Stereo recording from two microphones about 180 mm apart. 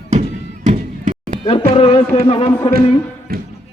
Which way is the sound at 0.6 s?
40° right (ahead or behind).